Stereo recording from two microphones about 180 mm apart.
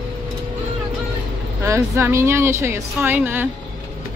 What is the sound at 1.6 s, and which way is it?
A woman's voice, 15° right (ahead or behind).